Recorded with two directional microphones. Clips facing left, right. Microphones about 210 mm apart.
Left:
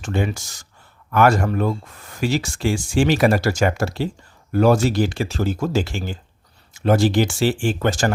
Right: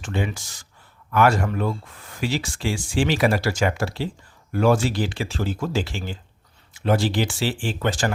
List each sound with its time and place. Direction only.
0.0 s speech: 45° left (ahead or behind)